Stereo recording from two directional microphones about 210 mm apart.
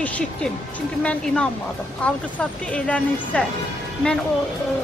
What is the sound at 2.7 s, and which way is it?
Speech, 5° left (ahead or behind).